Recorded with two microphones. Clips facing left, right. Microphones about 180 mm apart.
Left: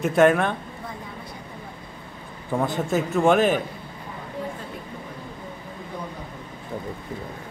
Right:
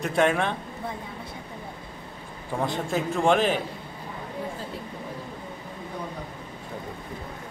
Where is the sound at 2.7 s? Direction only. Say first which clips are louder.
Left 3 dB; 5° left (ahead or behind).